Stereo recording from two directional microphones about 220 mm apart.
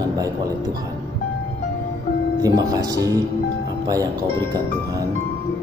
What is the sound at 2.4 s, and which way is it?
Speech, 15° right (ahead or behind).